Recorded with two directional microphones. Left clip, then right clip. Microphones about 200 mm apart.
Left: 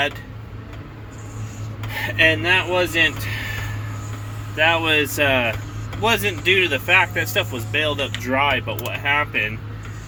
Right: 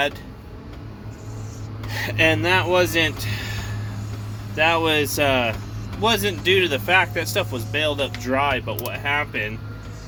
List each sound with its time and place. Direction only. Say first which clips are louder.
1.9 s speech: left 2 dB; 15° right (ahead or behind)
4.5 s speech: left 1 dB; 15° right (ahead or behind)